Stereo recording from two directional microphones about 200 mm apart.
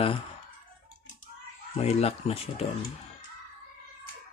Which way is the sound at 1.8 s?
30° left (ahead or behind).